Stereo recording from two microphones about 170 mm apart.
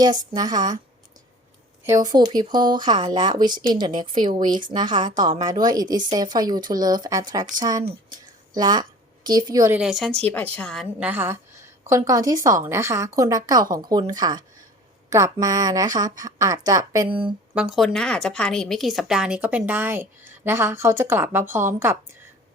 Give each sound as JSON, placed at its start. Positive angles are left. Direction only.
{"t": 0.0, "sound": "a woman's voice", "side_deg": -25}
{"t": 2.0, "sound": "a woman's voice", "side_deg": -25}
{"t": 9.7, "sound": "speech", "side_deg": -5}
{"t": 11.0, "sound": "a woman's voice", "side_deg": -10}
{"t": 17.5, "sound": "a woman's voice", "side_deg": -5}